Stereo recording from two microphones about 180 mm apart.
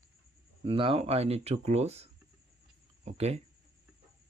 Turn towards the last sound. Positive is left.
turn(degrees=-35)  # may be behind; listen again after turning